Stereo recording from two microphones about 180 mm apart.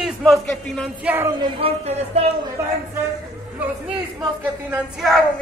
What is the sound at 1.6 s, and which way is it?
Speech, 35° right (ahead or behind).